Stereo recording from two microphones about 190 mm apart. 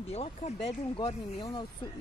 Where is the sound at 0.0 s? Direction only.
35° left (ahead or behind).